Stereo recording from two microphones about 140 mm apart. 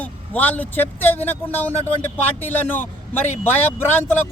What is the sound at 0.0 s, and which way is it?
Speech, 10° left (ahead or behind).